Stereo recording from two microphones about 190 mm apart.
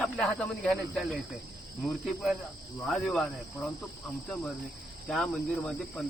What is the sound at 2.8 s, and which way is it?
Speech, centre (ahead or behind).